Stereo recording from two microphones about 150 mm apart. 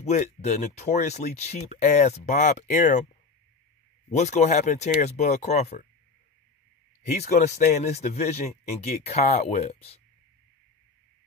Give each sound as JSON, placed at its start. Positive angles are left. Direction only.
{"t": 0.0, "sound": "speech", "side_deg": 50}
{"t": 4.1, "sound": "speech", "side_deg": 50}
{"t": 7.3, "sound": "speech", "side_deg": 50}